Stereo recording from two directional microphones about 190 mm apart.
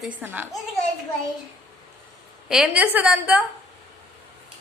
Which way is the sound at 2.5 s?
5° right (ahead or behind).